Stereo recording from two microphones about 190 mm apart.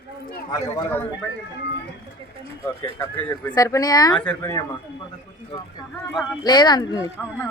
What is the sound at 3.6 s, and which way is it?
A woman's voice, 20° left (ahead or behind).